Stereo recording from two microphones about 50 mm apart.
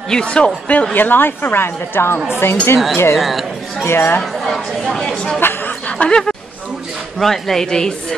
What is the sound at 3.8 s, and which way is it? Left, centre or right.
Speech, left.